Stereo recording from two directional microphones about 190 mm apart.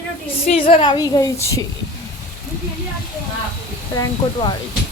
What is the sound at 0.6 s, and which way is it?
A woman's voice, 30° left (ahead or behind).